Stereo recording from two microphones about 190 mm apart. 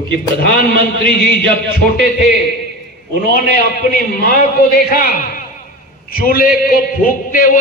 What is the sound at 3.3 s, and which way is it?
A man's voice, 45° left (ahead or behind).